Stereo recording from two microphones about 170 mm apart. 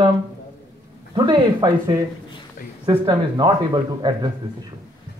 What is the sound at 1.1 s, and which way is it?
Speech, 25° right (ahead or behind).